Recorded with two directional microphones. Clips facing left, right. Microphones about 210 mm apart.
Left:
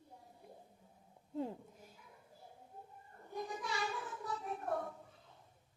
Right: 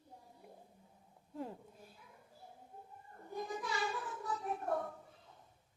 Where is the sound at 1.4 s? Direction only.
15° left (ahead or behind).